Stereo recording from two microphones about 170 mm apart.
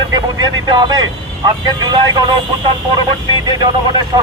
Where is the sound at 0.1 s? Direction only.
25° right (ahead or behind).